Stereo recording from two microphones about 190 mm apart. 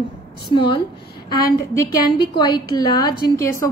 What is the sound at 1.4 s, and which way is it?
A woman's voice, 15° left (ahead or behind).